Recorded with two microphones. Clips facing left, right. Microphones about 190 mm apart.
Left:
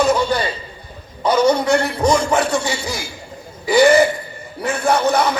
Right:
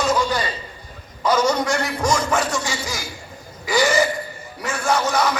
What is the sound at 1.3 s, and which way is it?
Speech, 60° left (ahead or behind).